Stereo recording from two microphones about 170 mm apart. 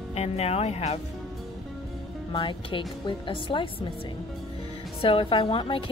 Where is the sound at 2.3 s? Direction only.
30° left (ahead or behind).